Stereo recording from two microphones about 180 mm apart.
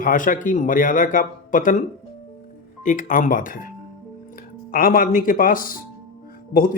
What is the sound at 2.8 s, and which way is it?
Speech, 45° left (ahead or behind).